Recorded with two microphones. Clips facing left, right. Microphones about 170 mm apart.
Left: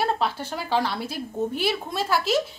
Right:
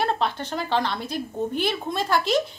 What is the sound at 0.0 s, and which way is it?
A woman's voice, 5° left (ahead or behind).